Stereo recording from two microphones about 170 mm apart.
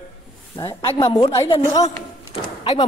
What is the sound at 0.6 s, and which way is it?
Speech, 30° left (ahead or behind).